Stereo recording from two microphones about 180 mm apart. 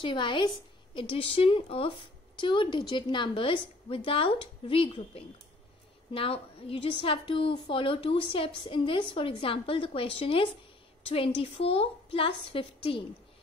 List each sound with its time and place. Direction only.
0.0 s a woman's voice: 25° left (ahead or behind)